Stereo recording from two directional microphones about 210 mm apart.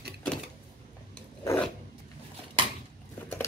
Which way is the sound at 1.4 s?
5° left (ahead or behind).